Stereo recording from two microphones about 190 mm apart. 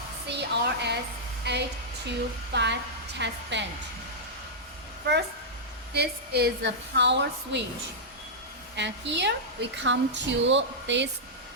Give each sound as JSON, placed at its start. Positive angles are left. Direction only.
{"t": 0.3, "sound": "a woman's voice", "side_deg": -65}
{"t": 5.9, "sound": "a woman's voice", "side_deg": -60}
{"t": 8.7, "sound": "a woman's voice", "side_deg": -65}